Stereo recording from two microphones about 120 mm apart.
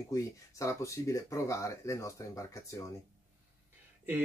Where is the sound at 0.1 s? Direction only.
25° left (ahead or behind).